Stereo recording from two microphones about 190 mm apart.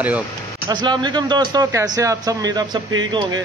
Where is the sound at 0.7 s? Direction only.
25° right (ahead or behind).